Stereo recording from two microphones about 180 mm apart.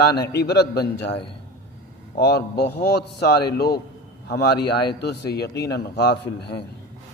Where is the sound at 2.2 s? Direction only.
65° left (ahead or behind).